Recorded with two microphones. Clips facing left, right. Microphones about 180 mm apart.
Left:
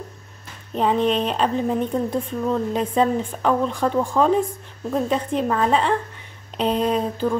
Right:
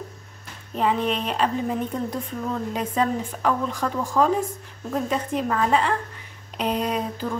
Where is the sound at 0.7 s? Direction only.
30° left (ahead or behind).